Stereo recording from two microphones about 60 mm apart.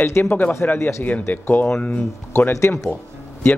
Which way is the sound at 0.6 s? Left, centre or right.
Left.